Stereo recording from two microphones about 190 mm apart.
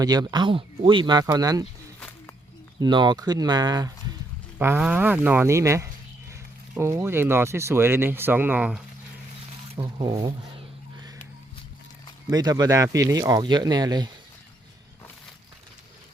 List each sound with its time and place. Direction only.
0.0 s speech: 20° right (ahead or behind)
2.0 s a sound: 10° left (ahead or behind)
2.8 s speech: 25° right (ahead or behind)
4.5 s speech: 10° right (ahead or behind)
9.7 s speech: 20° right (ahead or behind)
12.3 s speech: 20° right (ahead or behind)